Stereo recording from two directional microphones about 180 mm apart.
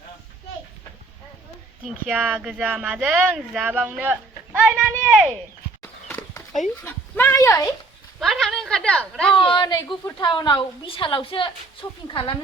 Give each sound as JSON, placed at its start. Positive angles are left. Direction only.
{"t": 2.0, "sound": "speech", "side_deg": -5}
{"t": 5.8, "sound": "horse", "side_deg": 15}
{"t": 6.8, "sound": "speech", "side_deg": 15}
{"t": 8.2, "sound": "a woman's voice", "side_deg": 0}
{"t": 9.3, "sound": "a woman's voice", "side_deg": 25}